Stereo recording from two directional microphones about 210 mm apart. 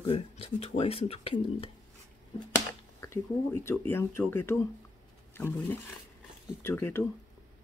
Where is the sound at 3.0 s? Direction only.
15° left (ahead or behind).